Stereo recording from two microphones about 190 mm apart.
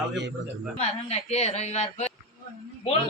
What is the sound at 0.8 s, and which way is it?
A woman's voice, 35° left (ahead or behind).